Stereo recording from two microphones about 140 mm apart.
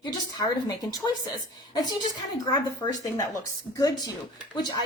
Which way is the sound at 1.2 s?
25° left (ahead or behind).